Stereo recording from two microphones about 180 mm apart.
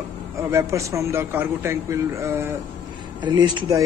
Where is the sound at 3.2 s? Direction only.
25° right (ahead or behind).